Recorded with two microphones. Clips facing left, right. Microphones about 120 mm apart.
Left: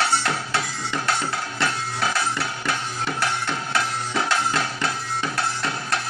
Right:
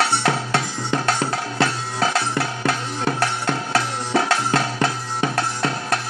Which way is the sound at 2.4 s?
40° right (ahead or behind).